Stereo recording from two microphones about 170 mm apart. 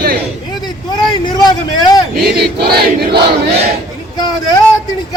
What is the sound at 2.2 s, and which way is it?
Battle cry, 70° right (ahead or behind).